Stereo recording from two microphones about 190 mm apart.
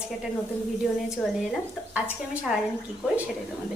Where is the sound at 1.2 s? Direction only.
5° left (ahead or behind).